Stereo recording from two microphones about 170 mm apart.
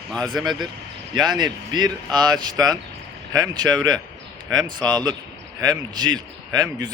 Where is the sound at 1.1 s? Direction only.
25° right (ahead or behind).